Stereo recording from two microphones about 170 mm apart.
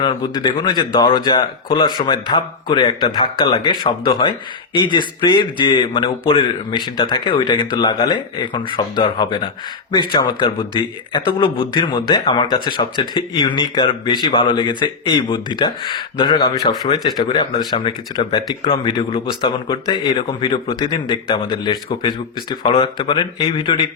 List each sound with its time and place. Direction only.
0.0 s speech: 25° left (ahead or behind)